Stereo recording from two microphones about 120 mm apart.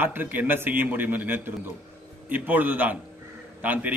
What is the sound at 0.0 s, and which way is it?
A man's voice, 15° right (ahead or behind).